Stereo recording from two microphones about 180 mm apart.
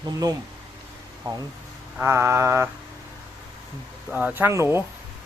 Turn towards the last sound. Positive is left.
turn(degrees=-15)  # may be behind; listen again after turning